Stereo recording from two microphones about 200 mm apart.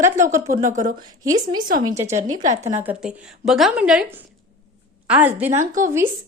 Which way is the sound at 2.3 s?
40° right (ahead or behind).